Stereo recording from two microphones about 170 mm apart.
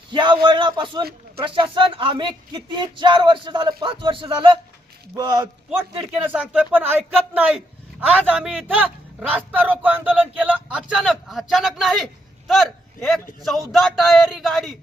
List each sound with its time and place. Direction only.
0.1 s a sound: 30° right (ahead or behind)
0.4 s speech: 30° right (ahead or behind)
6.2 s speech: 10° right (ahead or behind)
13.4 s a man's voice: centre (ahead or behind)